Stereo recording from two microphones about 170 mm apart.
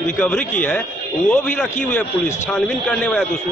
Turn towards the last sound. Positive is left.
turn(degrees=5)  # may be behind; listen again after turning